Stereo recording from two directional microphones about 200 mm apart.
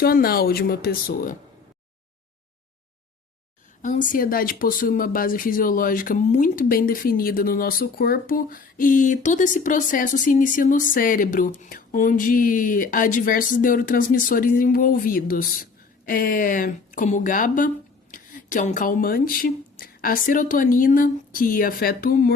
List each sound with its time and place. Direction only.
0.0 s speech: 50° left (ahead or behind)
3.8 s speech: 40° left (ahead or behind)